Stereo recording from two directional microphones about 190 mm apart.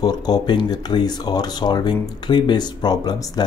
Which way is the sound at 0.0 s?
20° left (ahead or behind).